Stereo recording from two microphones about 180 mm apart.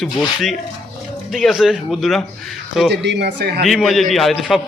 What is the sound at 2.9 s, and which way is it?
Speech, 70° right (ahead or behind).